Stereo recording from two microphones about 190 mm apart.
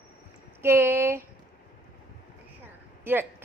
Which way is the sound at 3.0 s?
10° right (ahead or behind).